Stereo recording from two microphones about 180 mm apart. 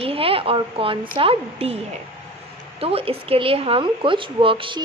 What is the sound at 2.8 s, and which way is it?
A woman's voice, 30° right (ahead or behind).